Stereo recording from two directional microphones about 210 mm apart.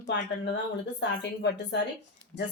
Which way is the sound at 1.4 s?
55° left (ahead or behind).